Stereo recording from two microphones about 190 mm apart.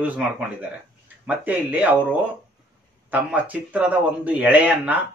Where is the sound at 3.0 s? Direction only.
10° right (ahead or behind).